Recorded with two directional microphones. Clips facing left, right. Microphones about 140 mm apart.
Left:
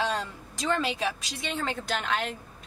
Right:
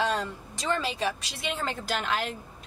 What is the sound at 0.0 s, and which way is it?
A woman's voice, centre (ahead or behind).